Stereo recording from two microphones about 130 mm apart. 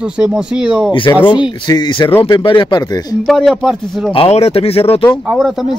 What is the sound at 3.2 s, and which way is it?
Speech, centre (ahead or behind).